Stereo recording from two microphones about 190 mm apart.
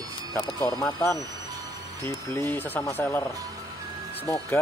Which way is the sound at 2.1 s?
15° left (ahead or behind).